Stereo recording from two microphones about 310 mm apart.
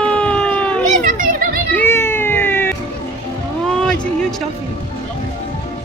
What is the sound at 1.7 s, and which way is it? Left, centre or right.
Baby cry, centre.